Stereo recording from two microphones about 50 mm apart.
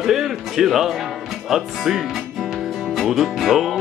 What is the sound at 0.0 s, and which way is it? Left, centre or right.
Music, centre.